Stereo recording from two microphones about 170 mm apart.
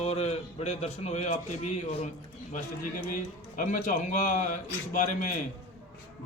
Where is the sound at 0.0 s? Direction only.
40° left (ahead or behind).